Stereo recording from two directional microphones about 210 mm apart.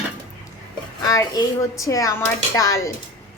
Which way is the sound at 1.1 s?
15° left (ahead or behind).